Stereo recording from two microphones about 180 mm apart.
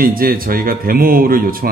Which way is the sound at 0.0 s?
55° right (ahead or behind).